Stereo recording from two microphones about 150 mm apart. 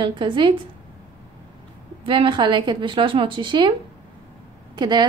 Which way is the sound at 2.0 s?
35° right (ahead or behind).